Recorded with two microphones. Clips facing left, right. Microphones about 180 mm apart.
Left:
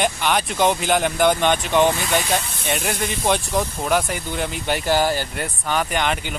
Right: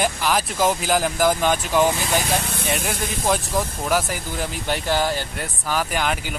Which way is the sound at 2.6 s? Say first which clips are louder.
Even; 60° left (ahead or behind).